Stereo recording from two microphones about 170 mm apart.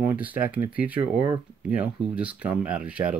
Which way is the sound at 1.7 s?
10° right (ahead or behind).